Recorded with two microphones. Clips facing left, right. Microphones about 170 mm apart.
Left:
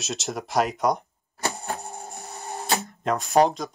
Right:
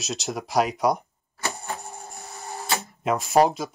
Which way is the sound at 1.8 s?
20° left (ahead or behind).